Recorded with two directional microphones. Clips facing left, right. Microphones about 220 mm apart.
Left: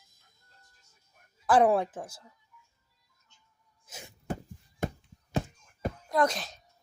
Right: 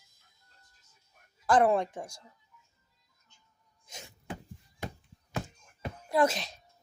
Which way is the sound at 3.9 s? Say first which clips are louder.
Left 1 dB; 5° left (ahead or behind).